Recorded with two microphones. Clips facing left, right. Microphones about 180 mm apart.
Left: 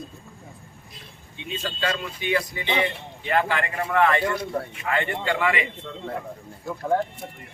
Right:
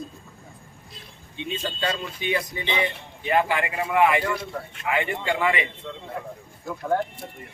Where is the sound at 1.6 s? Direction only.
20° right (ahead or behind).